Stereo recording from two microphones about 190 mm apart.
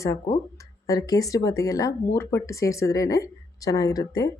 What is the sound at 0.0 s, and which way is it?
Speech, 15° left (ahead or behind).